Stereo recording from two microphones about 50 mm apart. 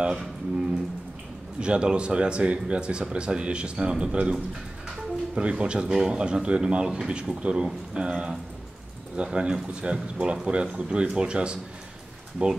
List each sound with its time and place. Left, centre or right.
0.0 s speech: centre